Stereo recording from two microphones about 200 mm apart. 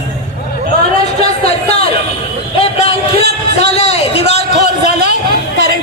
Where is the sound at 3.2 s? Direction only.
55° right (ahead or behind).